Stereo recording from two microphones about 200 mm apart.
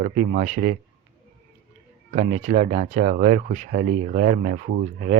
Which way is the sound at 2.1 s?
35° right (ahead or behind).